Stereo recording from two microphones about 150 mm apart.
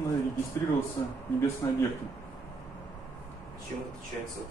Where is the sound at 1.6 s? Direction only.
25° left (ahead or behind).